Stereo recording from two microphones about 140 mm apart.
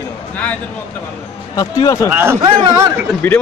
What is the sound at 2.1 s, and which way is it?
Speech, 15° right (ahead or behind).